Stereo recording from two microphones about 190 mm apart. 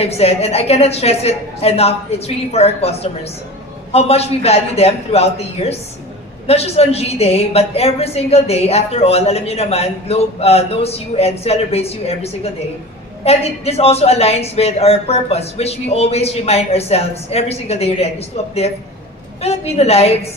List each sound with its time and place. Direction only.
0.0 s a woman's voice: 35° left (ahead or behind)